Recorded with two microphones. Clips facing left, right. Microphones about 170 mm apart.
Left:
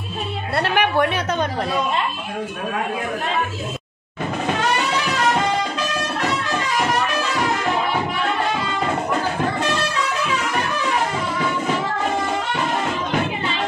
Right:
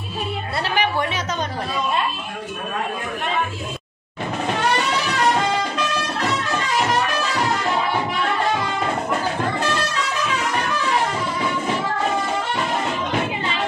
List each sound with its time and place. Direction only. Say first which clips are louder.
0.6 s a woman's voice: left 4 dB; 60° left (ahead or behind)